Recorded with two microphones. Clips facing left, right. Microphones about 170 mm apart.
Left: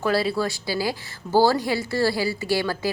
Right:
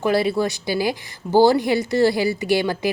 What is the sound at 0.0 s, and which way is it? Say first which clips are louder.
A woman's voice: right 3 dB; 20° right (ahead or behind).